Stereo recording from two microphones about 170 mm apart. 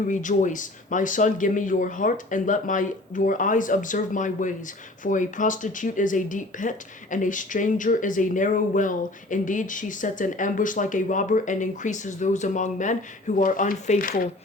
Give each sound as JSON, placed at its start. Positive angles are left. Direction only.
{"t": 0.1, "sound": "speech", "side_deg": 50}